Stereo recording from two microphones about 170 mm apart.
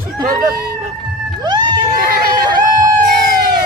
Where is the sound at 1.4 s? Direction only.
25° right (ahead or behind).